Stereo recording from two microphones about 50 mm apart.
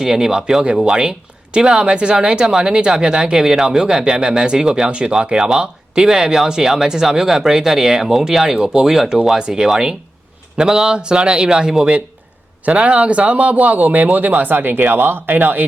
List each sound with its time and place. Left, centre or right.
0.0 s a man's voice: centre; by 15.6 s right